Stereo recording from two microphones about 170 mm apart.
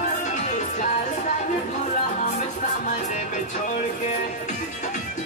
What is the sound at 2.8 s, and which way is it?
Music, 45° left (ahead or behind).